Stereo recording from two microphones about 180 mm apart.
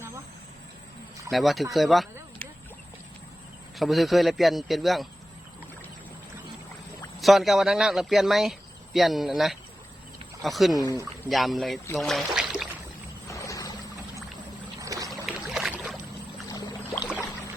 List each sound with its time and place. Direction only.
1.3 s speech: centre (ahead or behind)
3.8 s speech: centre (ahead or behind)
7.2 s speech: centre (ahead or behind)
12.3 s a sound: 5° right (ahead or behind)
13.2 s boat: 15° left (ahead or behind)
14.8 s trickle: 20° right (ahead or behind)
15.1 s boat: 5° right (ahead or behind)
16.5 s boat: 20° left (ahead or behind)